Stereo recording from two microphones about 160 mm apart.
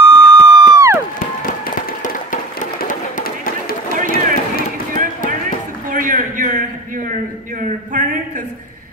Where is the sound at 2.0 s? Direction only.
55° left (ahead or behind).